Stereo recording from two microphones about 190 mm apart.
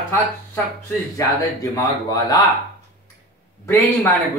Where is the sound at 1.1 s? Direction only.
20° left (ahead or behind).